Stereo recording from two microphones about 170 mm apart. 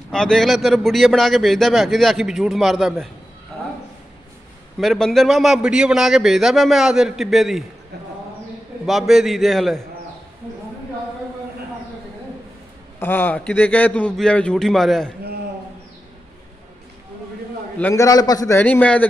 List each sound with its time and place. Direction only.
0.1 s a man's voice: 5° left (ahead or behind)
4.7 s a man's voice: centre (ahead or behind)
8.8 s a man's voice: centre (ahead or behind)
13.0 s a man's voice: 10° left (ahead or behind)
17.7 s a man's voice: 15° left (ahead or behind)
18.6 s a man's voice: 10° left (ahead or behind)